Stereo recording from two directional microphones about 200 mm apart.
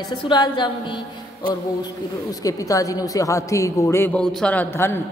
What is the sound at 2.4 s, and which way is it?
A woman's voice, 15° left (ahead or behind).